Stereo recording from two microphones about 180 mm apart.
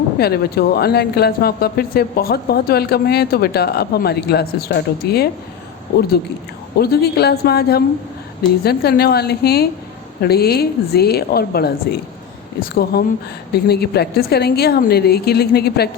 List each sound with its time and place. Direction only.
0.2 s speech: 60° left (ahead or behind)
6.7 s speech: 60° left (ahead or behind)